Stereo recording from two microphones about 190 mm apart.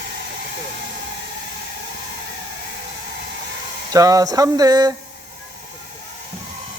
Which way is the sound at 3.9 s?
20° right (ahead or behind).